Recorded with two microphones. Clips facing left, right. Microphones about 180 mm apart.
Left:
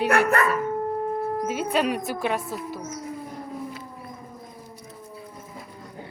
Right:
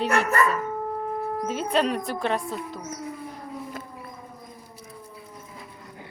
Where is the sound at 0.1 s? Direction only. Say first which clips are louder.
Left 3 dB; 60° left (ahead or behind).